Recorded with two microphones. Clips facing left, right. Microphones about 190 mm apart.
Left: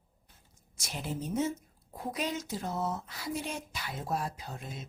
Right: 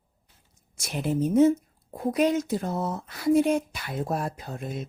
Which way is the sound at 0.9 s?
60° right (ahead or behind).